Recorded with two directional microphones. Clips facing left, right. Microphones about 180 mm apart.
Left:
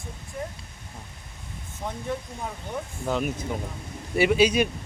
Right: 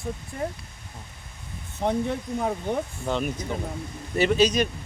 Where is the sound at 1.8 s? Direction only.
65° right (ahead or behind).